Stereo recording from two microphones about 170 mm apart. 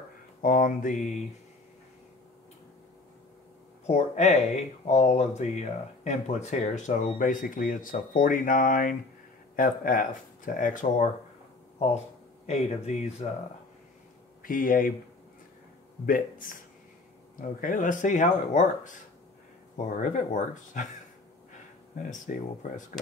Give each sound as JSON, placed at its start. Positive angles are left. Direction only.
{"t": 0.4, "sound": "speech", "side_deg": 55}
{"t": 3.8, "sound": "speech", "side_deg": 40}
{"t": 12.4, "sound": "speech", "side_deg": 40}
{"t": 14.4, "sound": "speech", "side_deg": 55}
{"t": 16.1, "sound": "speech", "side_deg": 55}
{"t": 21.9, "sound": "speech", "side_deg": 50}